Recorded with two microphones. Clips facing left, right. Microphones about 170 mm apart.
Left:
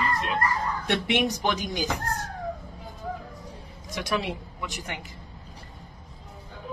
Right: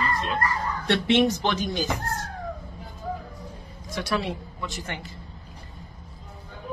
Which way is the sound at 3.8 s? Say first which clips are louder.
Right 1 dB; 20° left (ahead or behind).